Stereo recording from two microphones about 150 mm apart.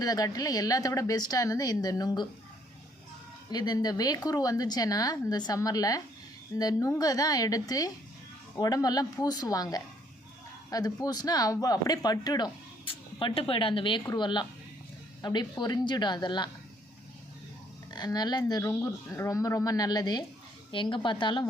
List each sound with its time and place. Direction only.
0.0 s speech: 25° left (ahead or behind)
3.5 s a woman's voice: 25° left (ahead or behind)
17.9 s a woman's voice: 25° left (ahead or behind)